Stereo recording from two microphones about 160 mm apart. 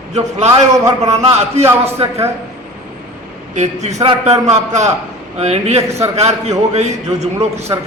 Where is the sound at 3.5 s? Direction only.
45° right (ahead or behind).